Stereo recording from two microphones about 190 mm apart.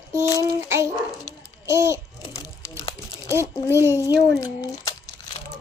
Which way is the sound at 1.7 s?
15° right (ahead or behind).